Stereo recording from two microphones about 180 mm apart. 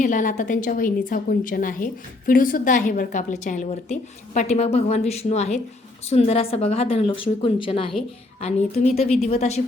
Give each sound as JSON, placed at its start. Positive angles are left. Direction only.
{"t": 0.0, "sound": "a woman's voice", "side_deg": 45}